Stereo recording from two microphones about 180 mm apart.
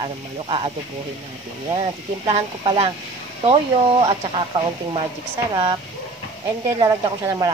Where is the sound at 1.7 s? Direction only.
30° right (ahead or behind).